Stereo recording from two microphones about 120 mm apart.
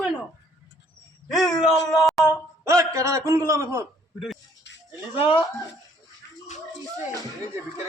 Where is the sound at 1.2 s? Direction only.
Centre (ahead or behind).